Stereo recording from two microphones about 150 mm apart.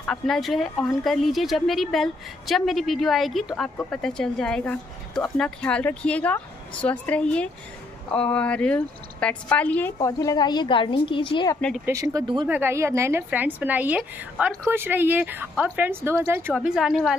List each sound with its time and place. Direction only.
0.0 s speech: 5° left (ahead or behind)
10.0 s a woman's voice: 25° left (ahead or behind)
11.8 s speech: 20° right (ahead or behind)
12.4 s speech: 15° right (ahead or behind)